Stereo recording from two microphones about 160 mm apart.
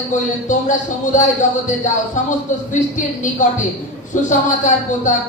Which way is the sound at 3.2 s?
55° left (ahead or behind).